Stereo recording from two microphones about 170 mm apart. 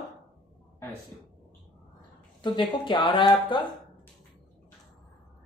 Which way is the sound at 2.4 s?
25° left (ahead or behind).